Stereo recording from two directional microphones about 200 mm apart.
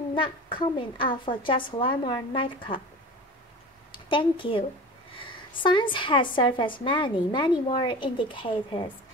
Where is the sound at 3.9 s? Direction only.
25° left (ahead or behind).